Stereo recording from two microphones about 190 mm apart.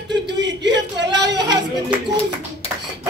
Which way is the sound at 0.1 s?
65° right (ahead or behind).